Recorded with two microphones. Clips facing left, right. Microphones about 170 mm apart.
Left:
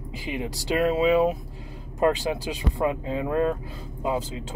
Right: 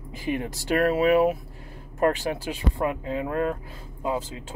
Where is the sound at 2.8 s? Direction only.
25° left (ahead or behind).